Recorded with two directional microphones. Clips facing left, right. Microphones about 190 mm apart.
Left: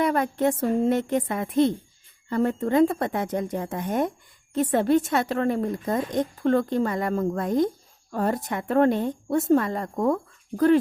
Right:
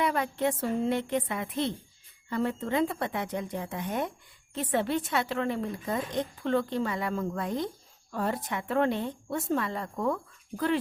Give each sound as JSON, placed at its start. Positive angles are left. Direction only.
{"t": 0.0, "sound": "a woman's voice", "side_deg": 45}